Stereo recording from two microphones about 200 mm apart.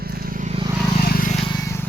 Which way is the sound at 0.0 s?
50° right (ahead or behind).